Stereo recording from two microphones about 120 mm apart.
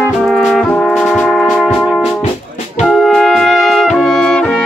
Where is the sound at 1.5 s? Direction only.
5° left (ahead or behind).